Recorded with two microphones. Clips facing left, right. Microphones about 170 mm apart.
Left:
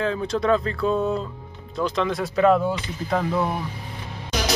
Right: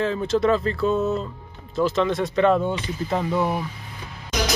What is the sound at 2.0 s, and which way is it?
Speech, 5° left (ahead or behind).